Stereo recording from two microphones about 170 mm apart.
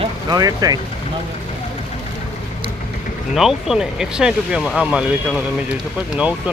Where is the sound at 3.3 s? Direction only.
Centre (ahead or behind).